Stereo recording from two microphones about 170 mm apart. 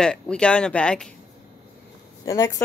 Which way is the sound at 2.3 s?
20° left (ahead or behind).